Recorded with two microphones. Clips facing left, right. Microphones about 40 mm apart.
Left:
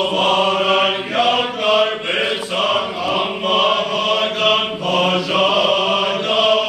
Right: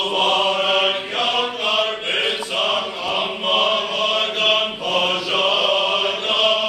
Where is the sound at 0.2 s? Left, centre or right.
Centre.